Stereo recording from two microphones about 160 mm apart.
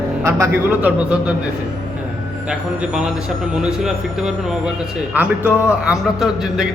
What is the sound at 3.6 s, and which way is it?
A man's voice, 5° right (ahead or behind).